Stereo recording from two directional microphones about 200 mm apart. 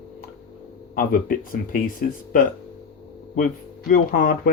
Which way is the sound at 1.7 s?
45° left (ahead or behind).